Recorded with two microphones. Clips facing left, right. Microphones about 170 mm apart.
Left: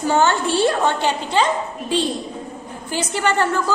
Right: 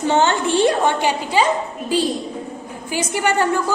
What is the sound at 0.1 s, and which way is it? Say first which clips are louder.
A woman's voice: even; 20° right (ahead or behind).